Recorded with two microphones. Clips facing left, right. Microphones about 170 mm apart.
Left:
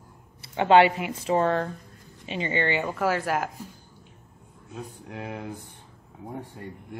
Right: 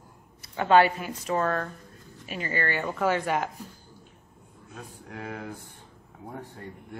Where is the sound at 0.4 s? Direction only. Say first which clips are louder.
Left 2 dB; 25° left (ahead or behind).